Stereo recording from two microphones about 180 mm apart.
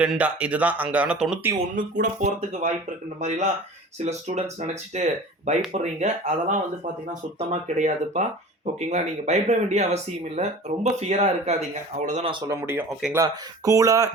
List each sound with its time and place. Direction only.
0.0 s speech: 5° right (ahead or behind)
2.5 s speech: 40° right (ahead or behind)
12.3 s speech: 15° right (ahead or behind)
13.1 s speech: 20° right (ahead or behind)